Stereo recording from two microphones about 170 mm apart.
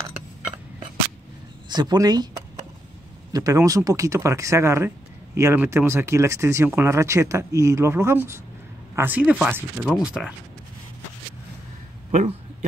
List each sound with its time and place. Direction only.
1.7 s speech: 25° right (ahead or behind); by 10.3 s 5° right (ahead or behind)